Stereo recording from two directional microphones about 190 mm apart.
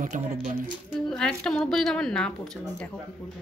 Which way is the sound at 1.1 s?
5° left (ahead or behind).